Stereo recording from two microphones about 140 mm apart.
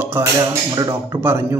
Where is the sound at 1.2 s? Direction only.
15° right (ahead or behind).